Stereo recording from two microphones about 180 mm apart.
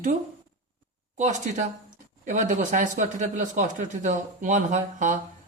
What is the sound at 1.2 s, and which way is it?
A man's voice, 40° right (ahead or behind).